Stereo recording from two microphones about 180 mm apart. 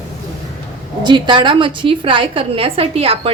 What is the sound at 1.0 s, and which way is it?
A woman's voice, 25° right (ahead or behind).